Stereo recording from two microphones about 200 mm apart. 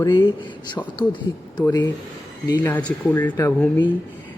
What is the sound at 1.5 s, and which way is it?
A man's voice, 20° left (ahead or behind).